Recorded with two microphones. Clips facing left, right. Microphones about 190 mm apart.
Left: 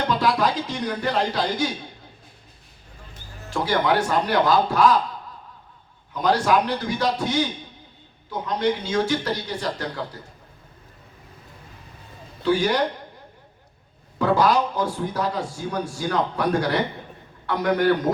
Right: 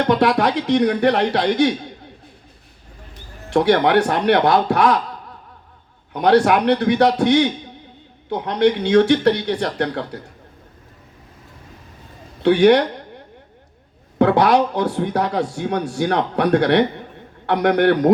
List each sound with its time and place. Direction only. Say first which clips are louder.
0.0 s a man's voice: right 5 dB; 65° right (ahead or behind)
3.5 s a man's voice: right 7 dB; 70° right (ahead or behind)
6.1 s a man's voice: right 6 dB; 70° right (ahead or behind)
12.4 s a man's voice: right 9 dB; 70° right (ahead or behind)
14.2 s a man's voice: right 5 dB; 70° right (ahead or behind)